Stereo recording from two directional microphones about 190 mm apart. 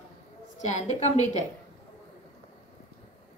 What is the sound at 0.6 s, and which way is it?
Speech, 40° left (ahead or behind).